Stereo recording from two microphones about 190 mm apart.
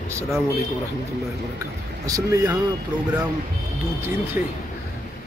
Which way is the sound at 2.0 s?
20° right (ahead or behind).